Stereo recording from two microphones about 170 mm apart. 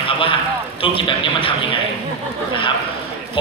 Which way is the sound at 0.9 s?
30° left (ahead or behind).